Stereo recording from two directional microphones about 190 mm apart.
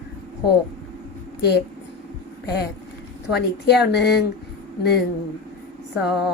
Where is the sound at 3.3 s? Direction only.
60° left (ahead or behind).